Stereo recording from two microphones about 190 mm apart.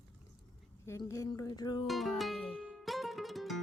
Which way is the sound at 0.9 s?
15° left (ahead or behind).